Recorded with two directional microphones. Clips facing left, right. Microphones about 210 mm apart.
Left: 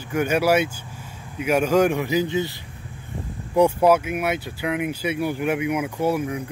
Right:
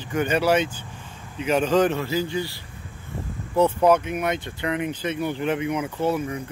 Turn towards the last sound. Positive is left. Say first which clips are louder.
# left 1 dB
turn(degrees=10)  # may be behind; listen again after turning